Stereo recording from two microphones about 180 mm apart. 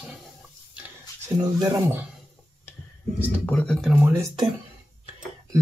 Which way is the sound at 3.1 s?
5° left (ahead or behind).